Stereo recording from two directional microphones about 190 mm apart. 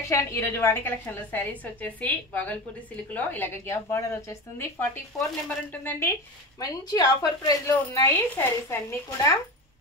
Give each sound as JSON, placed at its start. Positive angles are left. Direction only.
{"t": 0.1, "sound": "a woman's voice", "side_deg": 15}